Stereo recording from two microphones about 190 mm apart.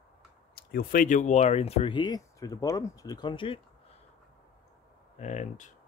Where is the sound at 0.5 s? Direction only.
50° left (ahead or behind); by 3.6 s 25° left (ahead or behind).